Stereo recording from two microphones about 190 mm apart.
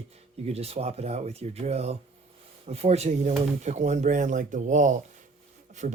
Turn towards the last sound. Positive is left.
turn(degrees=-40)  # may be behind; listen again after turning